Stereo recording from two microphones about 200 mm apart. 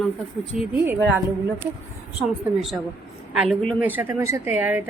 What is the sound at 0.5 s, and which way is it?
Speech, 40° right (ahead or behind).